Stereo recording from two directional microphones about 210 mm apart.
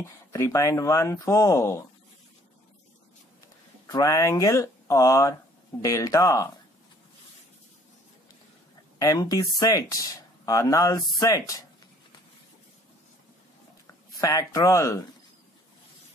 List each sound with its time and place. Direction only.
0.3 s speech: 15° left (ahead or behind)
3.8 s speech: 15° left (ahead or behind)
8.9 s speech: 15° left (ahead or behind)
14.2 s speech: 15° left (ahead or behind)